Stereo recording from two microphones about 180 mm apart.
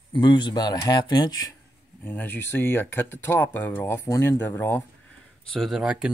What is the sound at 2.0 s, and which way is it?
Speech, 10° left (ahead or behind).